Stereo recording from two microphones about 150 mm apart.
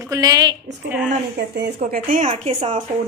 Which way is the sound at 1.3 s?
90° right.